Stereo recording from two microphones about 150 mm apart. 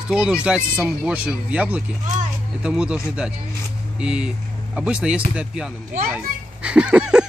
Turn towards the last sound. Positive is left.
turn(degrees=-5)  # may be behind; listen again after turning